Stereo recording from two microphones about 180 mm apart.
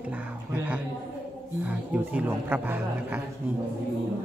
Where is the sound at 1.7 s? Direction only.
10° right (ahead or behind).